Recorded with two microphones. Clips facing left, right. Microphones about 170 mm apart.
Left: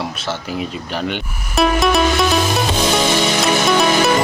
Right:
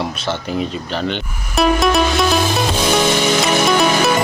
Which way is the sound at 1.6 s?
Centre (ahead or behind).